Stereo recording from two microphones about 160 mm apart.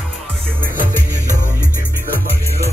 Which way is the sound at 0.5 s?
60° right (ahead or behind).